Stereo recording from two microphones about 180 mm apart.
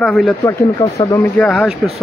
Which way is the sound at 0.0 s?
5° left (ahead or behind).